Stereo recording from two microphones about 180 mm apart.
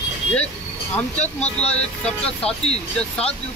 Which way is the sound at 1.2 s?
35° left (ahead or behind).